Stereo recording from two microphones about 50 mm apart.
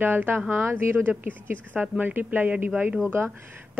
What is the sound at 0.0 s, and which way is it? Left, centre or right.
Speech, right.